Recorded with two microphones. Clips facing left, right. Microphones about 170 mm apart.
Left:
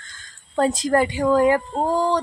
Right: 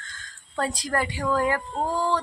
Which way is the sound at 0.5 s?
20° left (ahead or behind).